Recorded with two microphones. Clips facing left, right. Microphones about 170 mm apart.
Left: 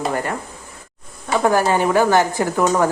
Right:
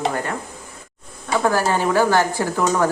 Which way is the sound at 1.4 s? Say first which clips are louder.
Left 3 dB; 15° left (ahead or behind).